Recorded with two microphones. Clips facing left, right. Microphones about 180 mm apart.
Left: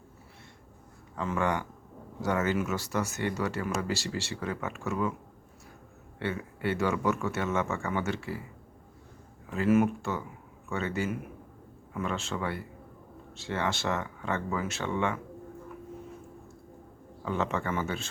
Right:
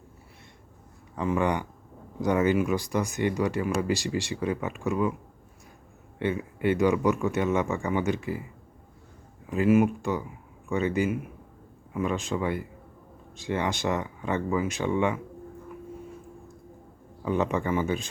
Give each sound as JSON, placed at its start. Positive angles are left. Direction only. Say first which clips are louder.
{"t": 1.1, "sound": "speech", "louder": "right 4 dB", "side_deg": -15}
{"t": 6.1, "sound": "speech", "louder": "right 5 dB", "side_deg": -15}
{"t": 9.5, "sound": "speech", "louder": "right 3 dB", "side_deg": -15}
{"t": 17.2, "sound": "speech", "louder": "right 5 dB", "side_deg": -15}